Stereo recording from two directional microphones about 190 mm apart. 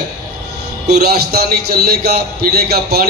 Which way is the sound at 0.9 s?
55° right (ahead or behind).